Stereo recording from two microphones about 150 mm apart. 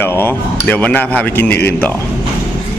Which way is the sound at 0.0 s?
15° left (ahead or behind).